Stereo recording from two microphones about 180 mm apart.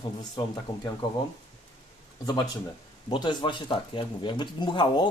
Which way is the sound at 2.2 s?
20° left (ahead or behind).